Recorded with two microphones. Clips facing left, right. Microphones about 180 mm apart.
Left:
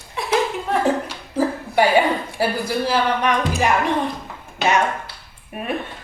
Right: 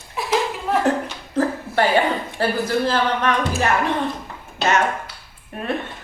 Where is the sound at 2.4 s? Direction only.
10° left (ahead or behind).